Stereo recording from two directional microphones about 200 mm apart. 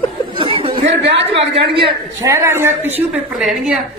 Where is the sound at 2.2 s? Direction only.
10° right (ahead or behind).